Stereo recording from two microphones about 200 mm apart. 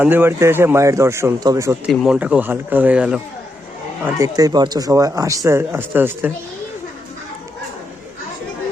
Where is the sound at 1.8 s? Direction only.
5° right (ahead or behind).